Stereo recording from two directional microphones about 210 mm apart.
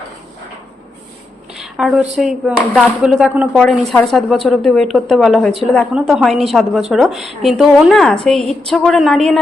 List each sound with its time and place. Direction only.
1.5 s a woman's voice: centre (ahead or behind)